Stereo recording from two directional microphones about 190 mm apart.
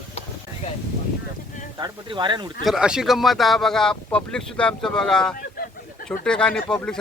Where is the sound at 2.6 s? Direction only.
5° right (ahead or behind).